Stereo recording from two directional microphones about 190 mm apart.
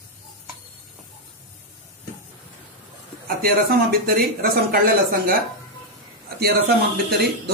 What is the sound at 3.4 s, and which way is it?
A man's voice, 50° right (ahead or behind).